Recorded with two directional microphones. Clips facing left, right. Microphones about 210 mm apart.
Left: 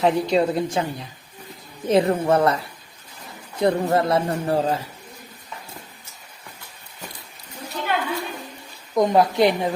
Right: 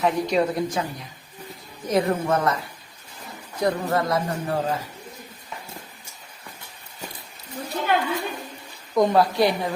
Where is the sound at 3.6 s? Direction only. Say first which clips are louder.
Left 4 dB; 25° left (ahead or behind).